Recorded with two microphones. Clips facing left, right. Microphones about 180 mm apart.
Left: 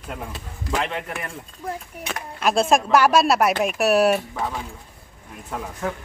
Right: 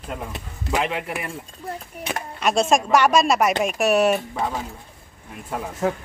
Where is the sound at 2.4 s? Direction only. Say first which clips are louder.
Even; centre (ahead or behind).